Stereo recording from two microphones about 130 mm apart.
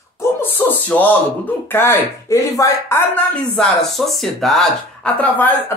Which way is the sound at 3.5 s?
5° left (ahead or behind).